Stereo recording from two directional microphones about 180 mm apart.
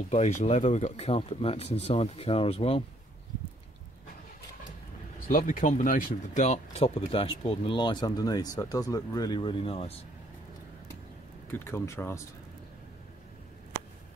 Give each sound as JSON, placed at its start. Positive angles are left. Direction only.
{"t": 0.1, "sound": "speech", "side_deg": 40}
{"t": 5.5, "sound": "speech", "side_deg": 45}
{"t": 11.5, "sound": "speech", "side_deg": 15}